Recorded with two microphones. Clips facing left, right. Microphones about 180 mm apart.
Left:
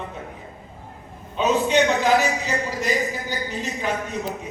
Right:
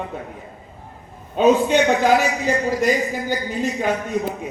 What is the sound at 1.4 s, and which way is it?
A man's voice, 50° right (ahead or behind).